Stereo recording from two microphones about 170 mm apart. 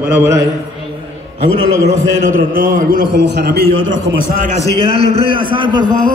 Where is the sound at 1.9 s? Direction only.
55° right (ahead or behind).